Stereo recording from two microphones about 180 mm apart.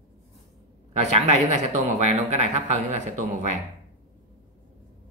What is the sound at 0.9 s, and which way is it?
Speech, 35° right (ahead or behind).